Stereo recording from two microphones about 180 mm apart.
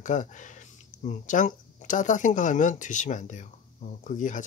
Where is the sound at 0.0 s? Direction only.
45° left (ahead or behind).